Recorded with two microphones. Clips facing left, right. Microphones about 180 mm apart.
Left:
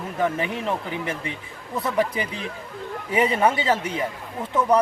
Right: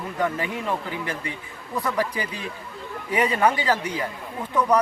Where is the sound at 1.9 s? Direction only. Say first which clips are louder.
Left 3 dB; 25° left (ahead or behind).